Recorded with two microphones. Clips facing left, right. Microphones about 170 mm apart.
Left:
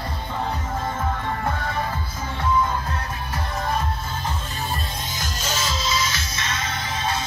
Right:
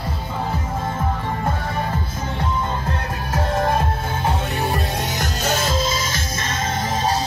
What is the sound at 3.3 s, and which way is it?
Music, 75° right (ahead or behind).